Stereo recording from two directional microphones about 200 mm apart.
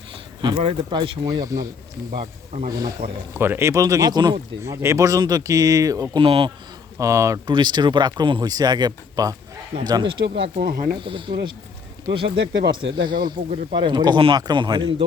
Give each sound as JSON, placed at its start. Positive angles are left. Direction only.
{"t": 0.4, "sound": "speech", "side_deg": -25}
{"t": 2.1, "sound": "speech", "side_deg": -30}
{"t": 3.0, "sound": "speech", "side_deg": -45}
{"t": 3.3, "sound": "speech", "side_deg": -10}
{"t": 7.0, "sound": "speech", "side_deg": -15}
{"t": 10.6, "sound": "speech", "side_deg": -45}
{"t": 10.9, "sound": "speech", "side_deg": -25}
{"t": 12.4, "sound": "speech", "side_deg": -60}
{"t": 12.7, "sound": "speech", "side_deg": -25}
{"t": 13.1, "sound": "speech", "side_deg": -45}
{"t": 13.7, "sound": "speech", "side_deg": -20}